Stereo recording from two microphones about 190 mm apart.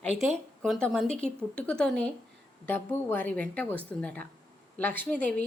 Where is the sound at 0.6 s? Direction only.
Centre (ahead or behind).